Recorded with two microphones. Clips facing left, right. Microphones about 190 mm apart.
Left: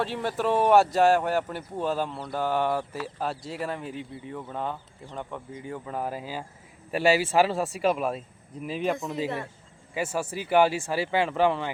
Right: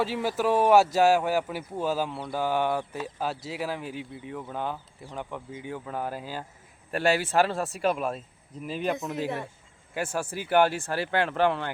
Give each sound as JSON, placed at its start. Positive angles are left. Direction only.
{"t": 0.0, "sound": "speech", "side_deg": -5}